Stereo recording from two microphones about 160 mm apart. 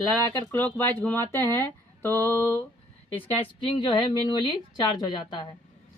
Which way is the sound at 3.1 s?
10° left (ahead or behind).